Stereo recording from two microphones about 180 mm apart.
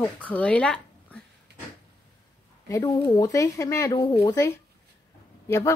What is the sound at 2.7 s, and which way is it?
Speech, 20° left (ahead or behind).